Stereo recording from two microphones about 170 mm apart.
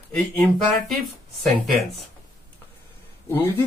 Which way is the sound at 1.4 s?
Centre (ahead or behind).